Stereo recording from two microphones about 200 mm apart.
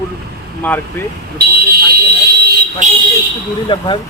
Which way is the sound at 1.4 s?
50° right (ahead or behind).